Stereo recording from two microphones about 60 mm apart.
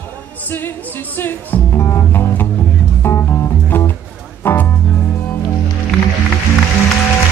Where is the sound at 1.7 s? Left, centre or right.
Left.